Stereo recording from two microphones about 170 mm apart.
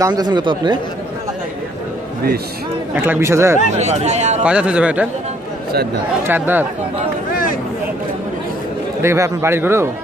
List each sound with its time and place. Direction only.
0.0 s speech: 25° right (ahead or behind)
2.9 s a man's voice: 10° right (ahead or behind)
3.7 s speech: 40° right (ahead or behind)
4.4 s a man's voice: 5° right (ahead or behind)
6.2 s a man's voice: 10° right (ahead or behind)
9.0 s a man's voice: 15° right (ahead or behind)